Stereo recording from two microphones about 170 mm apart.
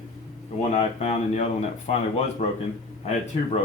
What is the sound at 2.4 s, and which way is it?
Speech, 40° left (ahead or behind).